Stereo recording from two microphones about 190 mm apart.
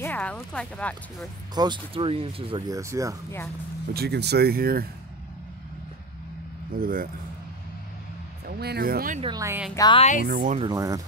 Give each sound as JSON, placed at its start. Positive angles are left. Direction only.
{"t": 0.0, "sound": "speech", "side_deg": 10}
{"t": 1.5, "sound": "speech", "side_deg": -20}
{"t": 2.7, "sound": "speech", "side_deg": -15}
{"t": 3.9, "sound": "speech", "side_deg": -60}
{"t": 6.8, "sound": "speech", "side_deg": -50}
{"t": 8.5, "sound": "speech", "side_deg": -55}
{"t": 9.2, "sound": "speech", "side_deg": -20}
{"t": 9.8, "sound": "speech", "side_deg": 25}
{"t": 10.2, "sound": "speech", "side_deg": -45}
{"t": 10.6, "sound": "speech", "side_deg": -20}